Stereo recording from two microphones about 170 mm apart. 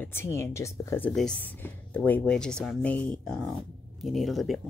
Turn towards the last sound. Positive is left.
turn(degrees=0)  # may be behind; listen again after turning